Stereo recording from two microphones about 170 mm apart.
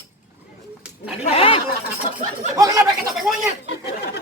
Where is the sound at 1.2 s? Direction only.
35° left (ahead or behind).